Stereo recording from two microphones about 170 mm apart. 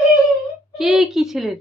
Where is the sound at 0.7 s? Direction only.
Centre (ahead or behind).